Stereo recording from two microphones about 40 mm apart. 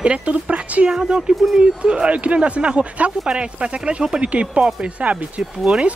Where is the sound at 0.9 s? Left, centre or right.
Right.